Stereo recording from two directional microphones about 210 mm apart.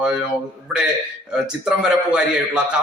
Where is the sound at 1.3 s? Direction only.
5° right (ahead or behind).